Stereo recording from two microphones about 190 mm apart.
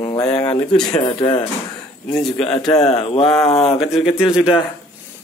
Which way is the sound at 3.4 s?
30° left (ahead or behind).